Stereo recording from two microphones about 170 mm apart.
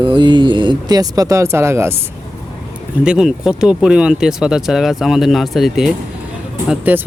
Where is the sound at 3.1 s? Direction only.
5° right (ahead or behind).